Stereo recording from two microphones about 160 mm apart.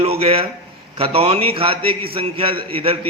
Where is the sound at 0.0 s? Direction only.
40° right (ahead or behind).